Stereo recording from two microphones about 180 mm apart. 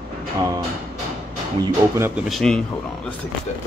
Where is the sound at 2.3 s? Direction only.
Centre (ahead or behind).